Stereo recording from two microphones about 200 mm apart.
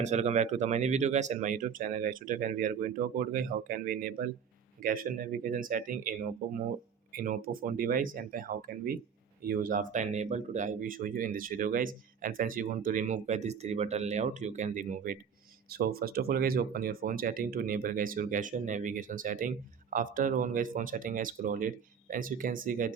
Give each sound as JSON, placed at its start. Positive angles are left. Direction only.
{"t": 0.0, "sound": "speech", "side_deg": -35}